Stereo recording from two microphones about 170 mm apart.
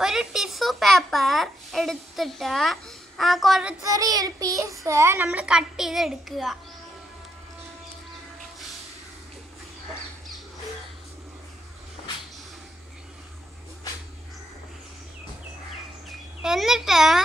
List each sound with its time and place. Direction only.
0.0 s a child's voice: 5° right (ahead or behind)
3.8 s child singing: 20° right (ahead or behind)
4.8 s a child's voice: 15° right (ahead or behind); by 6.6 s centre (ahead or behind)
16.1 s a child's voice: centre (ahead or behind)